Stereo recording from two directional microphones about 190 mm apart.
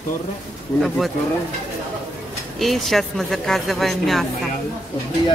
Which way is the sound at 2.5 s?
Centre (ahead or behind).